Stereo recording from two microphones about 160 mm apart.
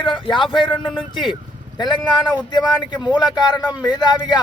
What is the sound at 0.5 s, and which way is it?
Speech, 30° left (ahead or behind).